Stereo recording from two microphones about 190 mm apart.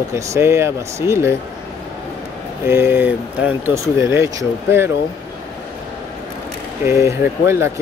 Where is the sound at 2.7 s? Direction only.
10° right (ahead or behind).